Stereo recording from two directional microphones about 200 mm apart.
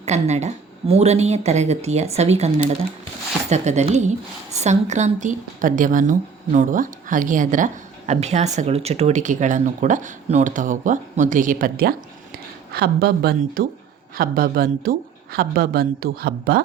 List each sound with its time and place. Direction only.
0.0 s a woman's voice: 35° right (ahead or behind)
3.5 s a woman's voice: 35° right (ahead or behind); by 16.6 s 50° right (ahead or behind)